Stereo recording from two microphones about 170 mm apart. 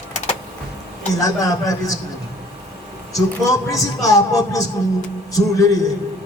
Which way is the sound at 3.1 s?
20° left (ahead or behind).